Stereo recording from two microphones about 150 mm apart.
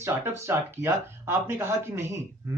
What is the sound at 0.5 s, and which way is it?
Speech, 15° right (ahead or behind).